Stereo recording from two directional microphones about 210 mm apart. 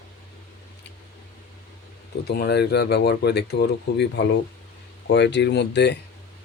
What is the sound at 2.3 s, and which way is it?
Speech, 50° left (ahead or behind).